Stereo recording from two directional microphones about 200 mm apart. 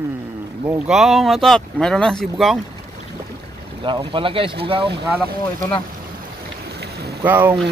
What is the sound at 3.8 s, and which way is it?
Speech, 25° right (ahead or behind).